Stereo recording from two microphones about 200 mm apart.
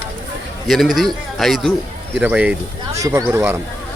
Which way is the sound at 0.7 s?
Centre (ahead or behind).